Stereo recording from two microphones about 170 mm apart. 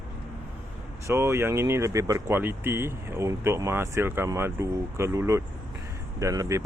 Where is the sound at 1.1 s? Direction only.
15° right (ahead or behind).